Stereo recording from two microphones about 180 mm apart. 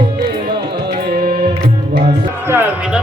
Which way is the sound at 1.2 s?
55° right (ahead or behind).